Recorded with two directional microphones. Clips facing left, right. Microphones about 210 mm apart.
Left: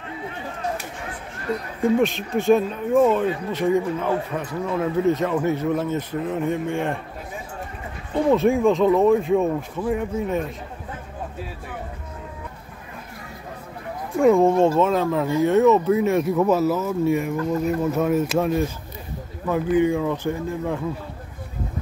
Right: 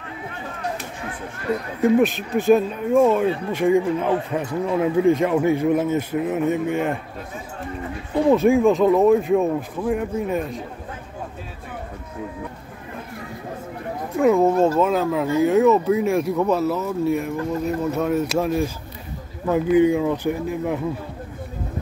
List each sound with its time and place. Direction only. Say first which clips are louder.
1.8 s speech: right 2 dB; centre (ahead or behind)
8.3 s speech: right 2 dB; centre (ahead or behind)
14.1 s speech: left 1 dB; centre (ahead or behind)
19.4 s speech: right 3 dB; 20° right (ahead or behind)